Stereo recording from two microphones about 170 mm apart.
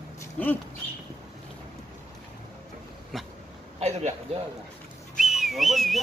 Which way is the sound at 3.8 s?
40° right (ahead or behind).